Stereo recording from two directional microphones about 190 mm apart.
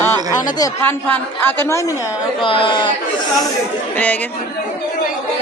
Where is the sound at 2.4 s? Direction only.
25° left (ahead or behind).